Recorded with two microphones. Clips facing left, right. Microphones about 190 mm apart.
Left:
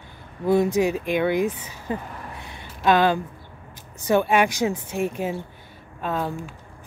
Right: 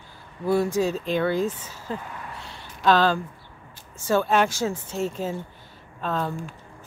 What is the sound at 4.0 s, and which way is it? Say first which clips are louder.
Speech: left 2 dB; 15° left (ahead or behind).